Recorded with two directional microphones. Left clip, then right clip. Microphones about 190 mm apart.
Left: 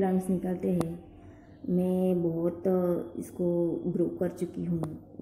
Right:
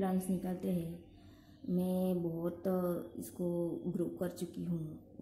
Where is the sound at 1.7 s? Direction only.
15° right (ahead or behind).